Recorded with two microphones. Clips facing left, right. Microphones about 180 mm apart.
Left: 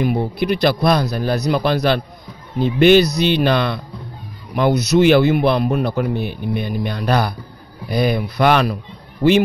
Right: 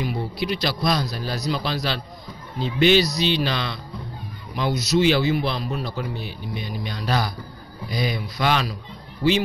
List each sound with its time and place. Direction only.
0.0 s a man's voice: 55° left (ahead or behind)